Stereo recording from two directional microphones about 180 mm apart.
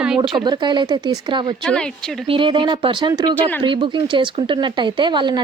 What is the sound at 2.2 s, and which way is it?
Speech, 30° right (ahead or behind).